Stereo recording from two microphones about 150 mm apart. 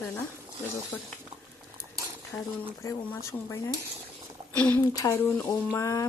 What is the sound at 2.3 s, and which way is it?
Speech, 10° left (ahead or behind).